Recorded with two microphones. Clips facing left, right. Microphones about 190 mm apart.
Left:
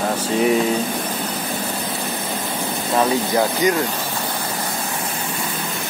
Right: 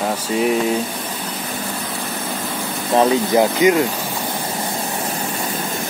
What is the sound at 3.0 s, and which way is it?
Speech, 20° right (ahead or behind).